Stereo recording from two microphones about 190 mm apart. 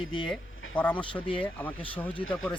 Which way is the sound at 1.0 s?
25° left (ahead or behind).